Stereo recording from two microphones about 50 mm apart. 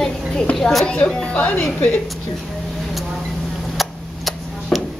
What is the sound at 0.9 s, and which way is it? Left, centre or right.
A woman's voice, centre.